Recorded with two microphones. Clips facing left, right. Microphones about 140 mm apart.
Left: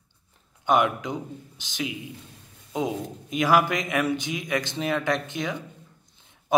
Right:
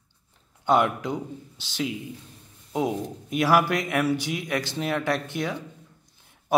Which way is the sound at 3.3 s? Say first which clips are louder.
Even; 15° left (ahead or behind).